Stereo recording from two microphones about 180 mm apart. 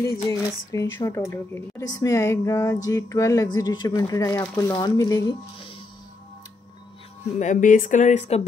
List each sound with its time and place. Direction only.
0.0 s speech: 15° left (ahead or behind)
7.3 s speech: 45° left (ahead or behind)